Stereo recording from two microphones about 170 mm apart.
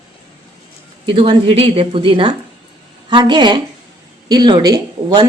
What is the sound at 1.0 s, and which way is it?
Speech, 30° right (ahead or behind).